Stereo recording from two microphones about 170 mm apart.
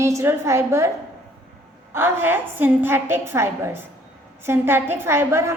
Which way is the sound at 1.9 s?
15° right (ahead or behind).